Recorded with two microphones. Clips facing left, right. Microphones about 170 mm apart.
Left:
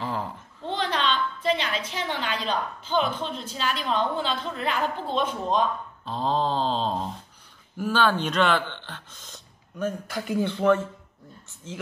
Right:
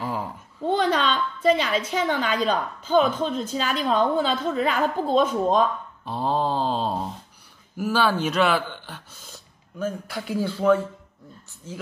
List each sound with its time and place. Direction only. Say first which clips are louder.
0.0 s a sound: right 1 dB; 10° right (ahead or behind)
0.8 s a woman's voice: right 3 dB; 45° right (ahead or behind)
6.0 s speech: right 1 dB; 10° right (ahead or behind)